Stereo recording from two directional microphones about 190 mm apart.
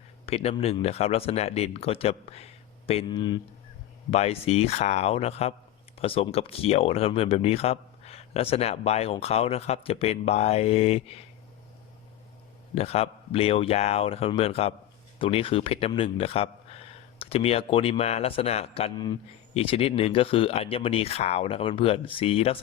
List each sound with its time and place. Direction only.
0.3 s speech: 30° left (ahead or behind)
12.7 s speech: 30° left (ahead or behind)